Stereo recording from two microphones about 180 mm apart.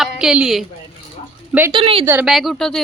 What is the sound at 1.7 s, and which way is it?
Speech, 30° right (ahead or behind).